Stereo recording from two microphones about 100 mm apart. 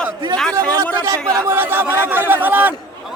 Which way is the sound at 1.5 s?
20° right (ahead or behind).